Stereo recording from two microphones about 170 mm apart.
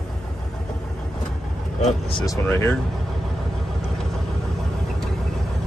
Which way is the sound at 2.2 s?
15° left (ahead or behind).